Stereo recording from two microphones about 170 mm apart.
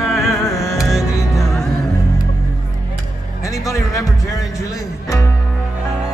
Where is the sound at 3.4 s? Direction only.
20° left (ahead or behind).